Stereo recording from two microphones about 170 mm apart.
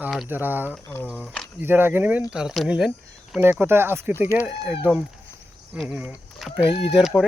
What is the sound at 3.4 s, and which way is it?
Speech, 10° right (ahead or behind).